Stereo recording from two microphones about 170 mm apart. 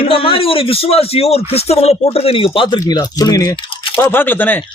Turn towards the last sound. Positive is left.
turn(degrees=10)  # may be behind; listen again after turning